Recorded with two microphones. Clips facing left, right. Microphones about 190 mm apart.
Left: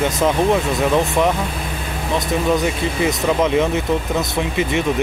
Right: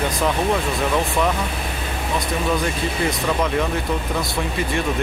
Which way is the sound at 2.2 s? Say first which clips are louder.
Left 5 dB; 20° left (ahead or behind).